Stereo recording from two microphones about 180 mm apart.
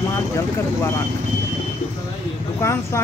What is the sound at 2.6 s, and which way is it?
Speech, 15° left (ahead or behind).